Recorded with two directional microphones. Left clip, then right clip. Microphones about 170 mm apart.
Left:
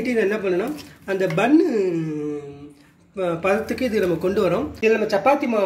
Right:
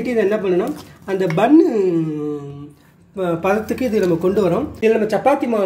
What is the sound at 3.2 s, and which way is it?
Speech, 35° right (ahead or behind).